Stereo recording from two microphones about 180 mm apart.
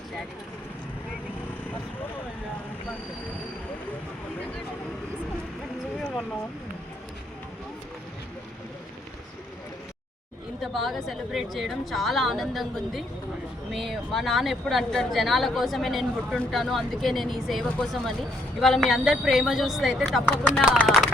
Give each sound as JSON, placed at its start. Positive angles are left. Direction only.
{"t": 10.6, "sound": "speech", "side_deg": 0}
{"t": 20.7, "sound": "speech", "side_deg": -5}